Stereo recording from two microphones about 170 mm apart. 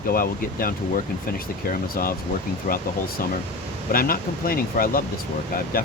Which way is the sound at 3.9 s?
60° left (ahead or behind).